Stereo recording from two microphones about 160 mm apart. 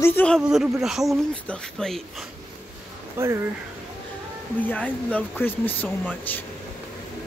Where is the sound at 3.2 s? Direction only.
15° right (ahead or behind).